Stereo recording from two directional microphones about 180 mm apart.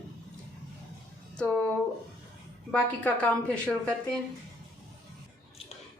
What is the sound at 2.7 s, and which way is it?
A woman's voice, 5° left (ahead or behind).